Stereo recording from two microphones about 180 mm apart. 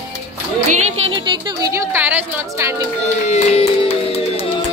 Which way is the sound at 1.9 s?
10° right (ahead or behind).